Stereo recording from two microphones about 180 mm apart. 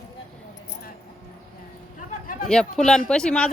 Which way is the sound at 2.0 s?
50° left (ahead or behind).